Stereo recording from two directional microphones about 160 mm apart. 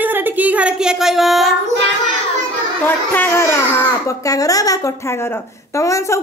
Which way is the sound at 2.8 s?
10° left (ahead or behind).